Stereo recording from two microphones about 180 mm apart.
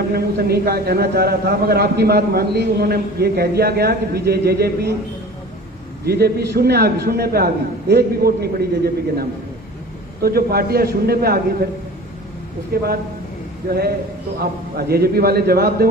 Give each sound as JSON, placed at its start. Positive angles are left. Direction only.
{"t": 0.1, "sound": "a man's voice", "side_deg": -60}
{"t": 6.0, "sound": "a man's voice", "side_deg": -60}
{"t": 10.2, "sound": "a man's voice", "side_deg": -60}
{"t": 12.7, "sound": "a man's voice", "side_deg": -60}
{"t": 14.4, "sound": "a man's voice", "side_deg": -60}